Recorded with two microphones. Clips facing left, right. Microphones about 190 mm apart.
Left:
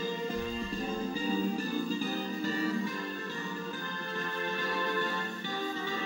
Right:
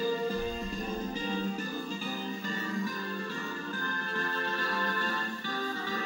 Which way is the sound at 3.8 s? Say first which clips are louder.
Right 2 dB; 15° left (ahead or behind).